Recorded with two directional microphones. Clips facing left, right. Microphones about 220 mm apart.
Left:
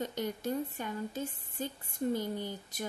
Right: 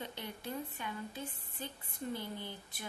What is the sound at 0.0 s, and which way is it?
A woman's voice, 45° left (ahead or behind).